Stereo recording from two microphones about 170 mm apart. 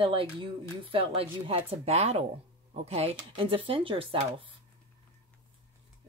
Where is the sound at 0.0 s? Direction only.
35° right (ahead or behind).